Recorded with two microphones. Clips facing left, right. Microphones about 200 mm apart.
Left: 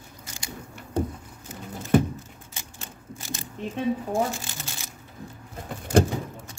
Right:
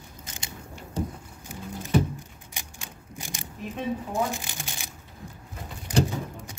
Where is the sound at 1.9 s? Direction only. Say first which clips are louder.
Left 4 dB; 50° left (ahead or behind).